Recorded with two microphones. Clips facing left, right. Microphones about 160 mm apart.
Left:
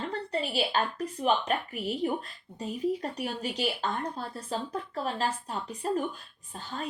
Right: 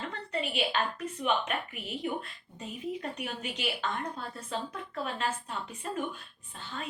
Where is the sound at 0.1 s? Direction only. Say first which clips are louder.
Left 3 dB; 35° left (ahead or behind).